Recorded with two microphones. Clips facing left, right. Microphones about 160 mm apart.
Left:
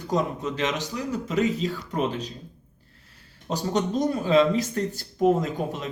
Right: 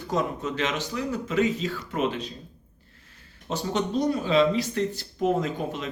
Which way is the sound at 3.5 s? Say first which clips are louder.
Left 2 dB; 40° left (ahead or behind).